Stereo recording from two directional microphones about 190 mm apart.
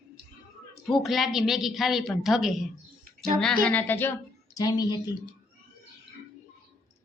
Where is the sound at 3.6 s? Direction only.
10° left (ahead or behind).